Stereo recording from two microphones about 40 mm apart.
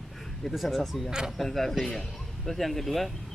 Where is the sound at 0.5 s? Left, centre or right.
Centre.